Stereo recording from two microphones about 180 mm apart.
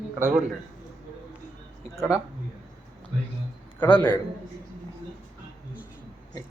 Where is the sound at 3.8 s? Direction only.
10° left (ahead or behind).